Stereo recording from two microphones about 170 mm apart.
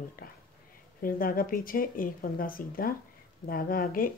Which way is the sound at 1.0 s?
55° left (ahead or behind).